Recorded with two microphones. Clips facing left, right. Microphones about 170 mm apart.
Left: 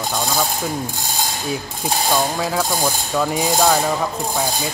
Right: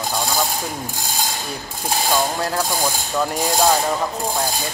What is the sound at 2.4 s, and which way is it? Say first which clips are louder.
Ratchet: left 1 dB; centre (ahead or behind).